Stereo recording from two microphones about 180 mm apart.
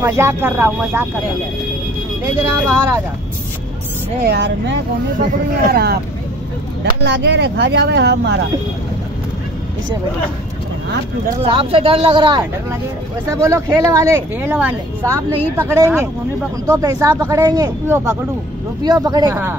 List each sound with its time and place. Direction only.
0.0 s a woman's voice: 15° right (ahead or behind)
2.7 s a woman's voice: 15° right (ahead or behind)
4.2 s speech: 70° right (ahead or behind)
11.4 s a woman's voice: 30° right (ahead or behind)